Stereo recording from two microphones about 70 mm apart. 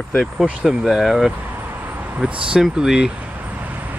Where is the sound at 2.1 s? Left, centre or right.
Centre.